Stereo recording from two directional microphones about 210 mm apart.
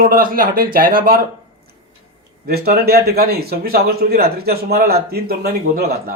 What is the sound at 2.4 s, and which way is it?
Speech, 50° right (ahead or behind).